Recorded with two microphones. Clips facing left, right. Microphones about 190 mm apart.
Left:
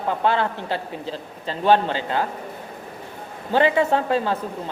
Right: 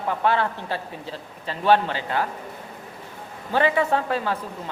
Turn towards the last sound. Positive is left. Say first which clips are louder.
# left 3 dB
turn(degrees=25)  # may be behind; listen again after turning